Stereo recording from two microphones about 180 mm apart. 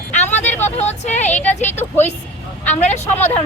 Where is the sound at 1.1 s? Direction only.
40° left (ahead or behind).